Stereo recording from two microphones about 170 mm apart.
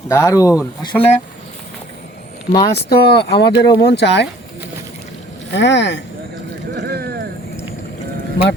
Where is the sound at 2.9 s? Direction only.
75° left (ahead or behind).